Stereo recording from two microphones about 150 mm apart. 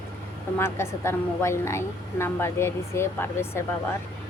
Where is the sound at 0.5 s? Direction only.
15° left (ahead or behind).